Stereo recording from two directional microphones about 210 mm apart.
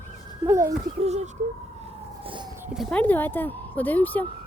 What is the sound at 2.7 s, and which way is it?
Speech, 5° left (ahead or behind).